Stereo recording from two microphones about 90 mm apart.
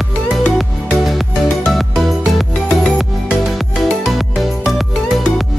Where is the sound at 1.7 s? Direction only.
Centre (ahead or behind).